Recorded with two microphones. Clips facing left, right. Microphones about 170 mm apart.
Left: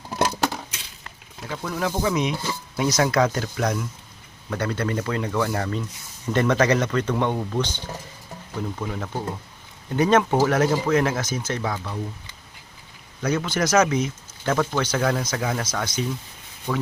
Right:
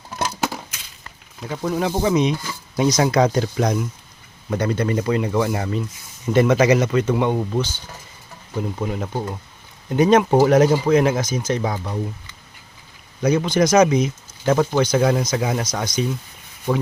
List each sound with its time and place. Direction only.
1.5 s speech: 25° right (ahead or behind); by 7.8 s 5° right (ahead or behind)
8.8 s speech: 20° right (ahead or behind)
13.2 s speech: 15° right (ahead or behind)
16.7 s speech: 30° right (ahead or behind)